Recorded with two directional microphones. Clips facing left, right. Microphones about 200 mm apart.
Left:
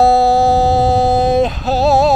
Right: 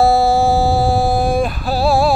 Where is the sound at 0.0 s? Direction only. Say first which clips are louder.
Left 2 dB; 20° left (ahead or behind).